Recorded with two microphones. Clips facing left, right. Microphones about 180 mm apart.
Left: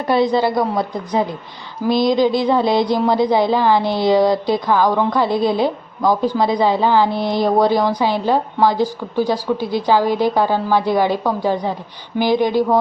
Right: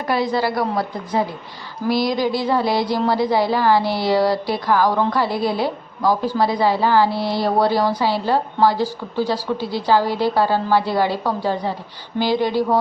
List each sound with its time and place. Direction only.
0.1 s a woman's voice: 20° left (ahead or behind)